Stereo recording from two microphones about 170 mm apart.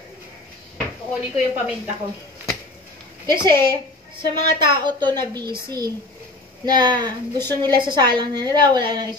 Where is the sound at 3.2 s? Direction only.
25° right (ahead or behind).